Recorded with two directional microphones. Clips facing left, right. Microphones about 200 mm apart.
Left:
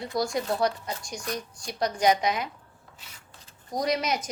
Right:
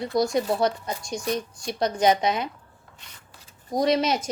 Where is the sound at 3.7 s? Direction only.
25° right (ahead or behind).